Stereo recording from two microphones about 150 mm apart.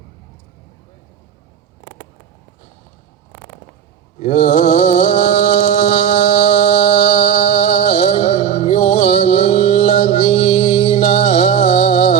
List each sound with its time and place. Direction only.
4.2 s mantra: 45° left (ahead or behind)